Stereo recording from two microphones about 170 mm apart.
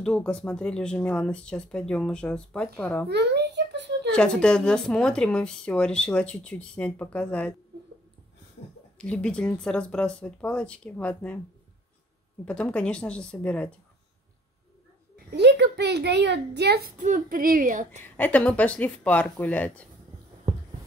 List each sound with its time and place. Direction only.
0.0 s speech: 5° left (ahead or behind)
3.1 s a sound: 80° right
4.1 s speech: 5° left (ahead or behind)
8.9 s a woman's voice: 5° left (ahead or behind)
12.4 s speech: 5° left (ahead or behind)
15.3 s a child's voice: 80° right
17.0 s a woman's voice: 50° right (ahead or behind)
18.1 s speech: 10° left (ahead or behind)